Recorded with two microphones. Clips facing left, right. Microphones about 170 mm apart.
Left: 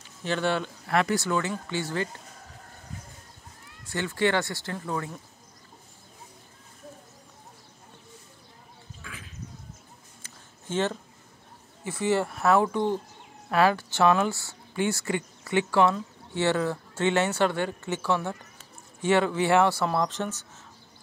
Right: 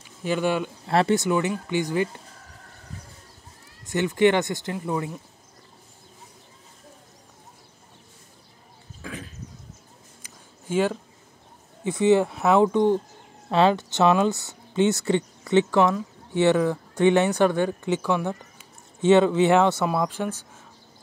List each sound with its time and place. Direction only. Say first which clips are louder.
0.2 s speech: right 3 dB; 10° right (ahead or behind)
0.8 s speech: right 5 dB; 25° right (ahead or behind)
3.8 s speech: right 7 dB; 20° right (ahead or behind)
9.0 s a sound: right 10 dB; 40° right (ahead or behind)
10.2 s a sound: right 3 dB; 10° right (ahead or behind)
11.8 s speech: right 7 dB; 20° right (ahead or behind)